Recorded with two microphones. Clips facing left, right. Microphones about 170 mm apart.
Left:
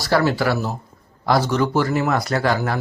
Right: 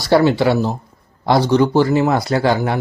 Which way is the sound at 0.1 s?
25° right (ahead or behind).